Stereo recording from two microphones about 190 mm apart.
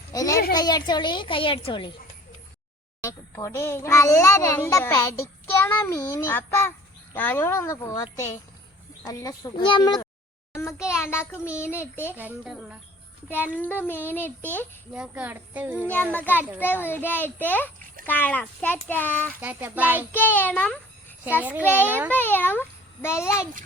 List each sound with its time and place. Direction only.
0.1 s a child's voice: 15° left (ahead or behind)
3.0 s a child's voice: 15° left (ahead or behind)
12.1 s speech: 10° right (ahead or behind)
13.2 s a child's voice: 10° left (ahead or behind)
14.9 s speech: 5° right (ahead or behind)
15.8 s a child's voice: 10° left (ahead or behind)
19.4 s speech: 10° right (ahead or behind)
20.1 s a child's voice: 10° left (ahead or behind)
21.8 s speech: 10° right (ahead or behind)
22.1 s a child's voice: 10° left (ahead or behind)